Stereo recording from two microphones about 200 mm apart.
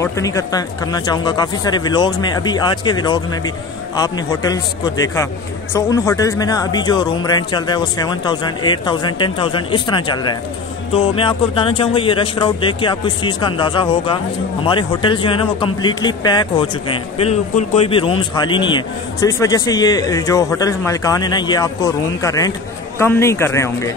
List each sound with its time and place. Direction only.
0.0 s a man's voice: 15° left (ahead or behind)